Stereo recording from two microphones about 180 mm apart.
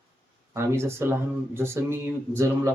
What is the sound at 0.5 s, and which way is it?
Speech, 15° right (ahead or behind).